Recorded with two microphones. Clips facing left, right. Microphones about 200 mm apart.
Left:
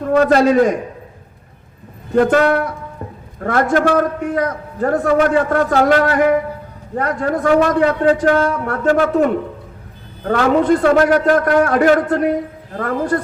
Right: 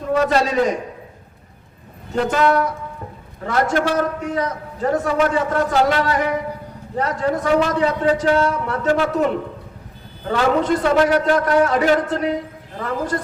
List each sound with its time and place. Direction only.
0.1 s a man's voice: 55° left (ahead or behind)
2.1 s a man's voice: 55° left (ahead or behind)
10.2 s a man's voice: 55° left (ahead or behind)